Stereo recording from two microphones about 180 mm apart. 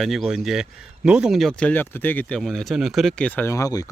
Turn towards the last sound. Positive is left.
turn(degrees=20)  # may be behind; listen again after turning